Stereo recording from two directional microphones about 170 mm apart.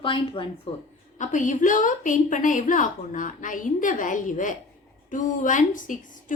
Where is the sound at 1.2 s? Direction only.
45° left (ahead or behind).